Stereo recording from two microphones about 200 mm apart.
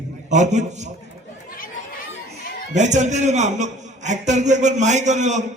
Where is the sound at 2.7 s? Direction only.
35° right (ahead or behind).